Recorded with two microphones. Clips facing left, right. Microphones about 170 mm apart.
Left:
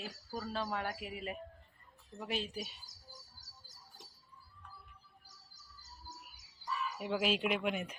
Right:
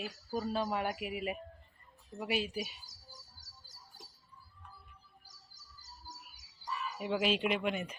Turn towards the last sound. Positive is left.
turn(degrees=0)  # may be behind; listen again after turning